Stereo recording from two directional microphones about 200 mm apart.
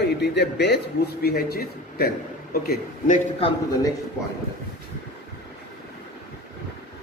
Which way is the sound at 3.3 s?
25° left (ahead or behind).